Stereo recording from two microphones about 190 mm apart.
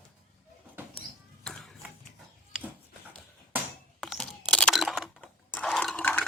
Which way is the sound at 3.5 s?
Centre (ahead or behind).